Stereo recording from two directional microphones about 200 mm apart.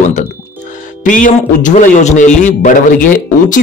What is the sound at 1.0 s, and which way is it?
Speech, 40° left (ahead or behind).